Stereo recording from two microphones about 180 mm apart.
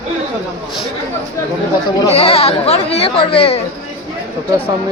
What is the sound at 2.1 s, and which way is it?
Speech, 35° left (ahead or behind).